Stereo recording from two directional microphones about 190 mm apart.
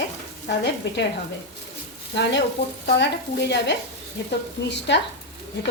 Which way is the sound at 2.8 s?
65° left (ahead or behind).